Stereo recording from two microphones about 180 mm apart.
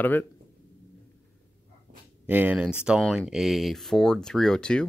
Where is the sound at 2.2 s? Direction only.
10° right (ahead or behind).